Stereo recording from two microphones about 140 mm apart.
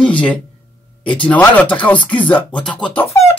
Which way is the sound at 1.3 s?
10° left (ahead or behind).